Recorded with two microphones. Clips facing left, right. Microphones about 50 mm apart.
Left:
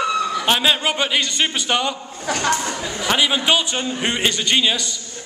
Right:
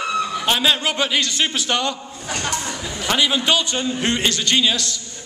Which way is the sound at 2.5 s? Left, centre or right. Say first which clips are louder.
Left 3 dB; left.